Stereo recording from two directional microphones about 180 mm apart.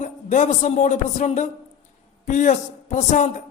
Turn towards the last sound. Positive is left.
turn(degrees=40)  # may be behind; listen again after turning